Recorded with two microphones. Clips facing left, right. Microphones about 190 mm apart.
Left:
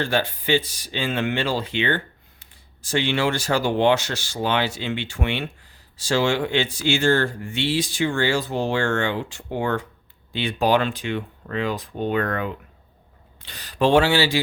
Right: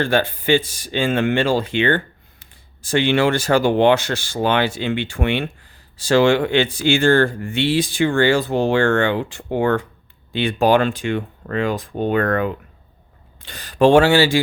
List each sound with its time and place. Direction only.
0.0 s speech: 55° right (ahead or behind)